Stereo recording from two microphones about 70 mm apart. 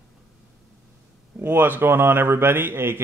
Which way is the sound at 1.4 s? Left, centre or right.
Right.